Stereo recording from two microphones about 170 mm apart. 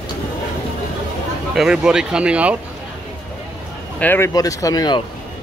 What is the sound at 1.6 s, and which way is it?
Speech, 5° right (ahead or behind).